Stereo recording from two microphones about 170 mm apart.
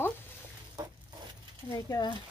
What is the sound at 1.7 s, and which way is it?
Speech, 20° left (ahead or behind).